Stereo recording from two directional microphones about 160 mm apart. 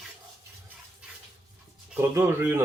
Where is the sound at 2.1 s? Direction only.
15° right (ahead or behind).